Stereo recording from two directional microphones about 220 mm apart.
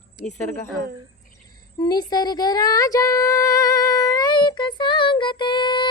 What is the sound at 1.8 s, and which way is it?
Female singing, 20° left (ahead or behind).